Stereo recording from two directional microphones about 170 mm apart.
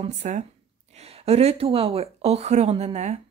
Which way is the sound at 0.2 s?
45° right (ahead or behind).